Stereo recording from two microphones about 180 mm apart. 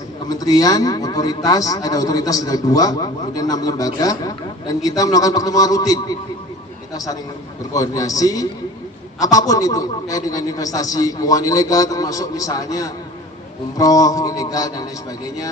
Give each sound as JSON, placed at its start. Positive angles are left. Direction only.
{"t": 0.3, "sound": "a man's voice", "side_deg": 20}
{"t": 7.7, "sound": "a man's voice", "side_deg": 20}